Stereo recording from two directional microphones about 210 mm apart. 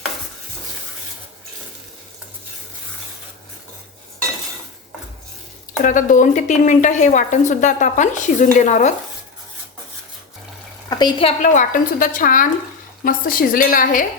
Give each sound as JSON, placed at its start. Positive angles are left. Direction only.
{"t": 5.8, "sound": "speech", "side_deg": 40}
{"t": 10.8, "sound": "a woman's voice", "side_deg": 20}
{"t": 11.4, "sound": "a woman's voice", "side_deg": 40}